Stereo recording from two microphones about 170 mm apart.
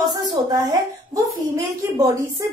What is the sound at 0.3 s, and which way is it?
A woman's voice, 25° right (ahead or behind).